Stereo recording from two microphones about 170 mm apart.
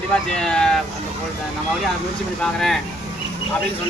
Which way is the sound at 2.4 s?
5° left (ahead or behind).